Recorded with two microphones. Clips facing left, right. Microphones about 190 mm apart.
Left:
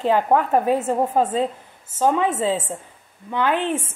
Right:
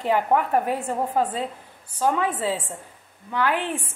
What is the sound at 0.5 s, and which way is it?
A woman's voice, 20° left (ahead or behind).